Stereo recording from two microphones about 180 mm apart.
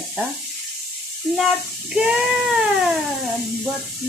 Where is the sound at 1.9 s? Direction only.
5° right (ahead or behind).